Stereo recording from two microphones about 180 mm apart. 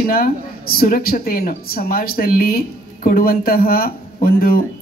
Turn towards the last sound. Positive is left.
turn(degrees=55)  # may be behind; listen again after turning